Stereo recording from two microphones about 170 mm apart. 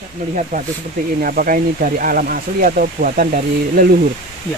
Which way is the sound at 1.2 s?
60° right (ahead or behind).